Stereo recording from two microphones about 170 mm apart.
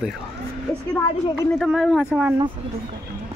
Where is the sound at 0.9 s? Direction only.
10° left (ahead or behind).